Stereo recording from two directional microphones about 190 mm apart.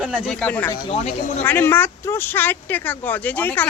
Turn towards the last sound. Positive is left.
turn(degrees=10)  # may be behind; listen again after turning